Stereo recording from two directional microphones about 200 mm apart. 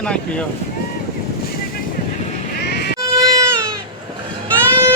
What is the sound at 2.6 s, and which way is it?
Music, 55° left (ahead or behind).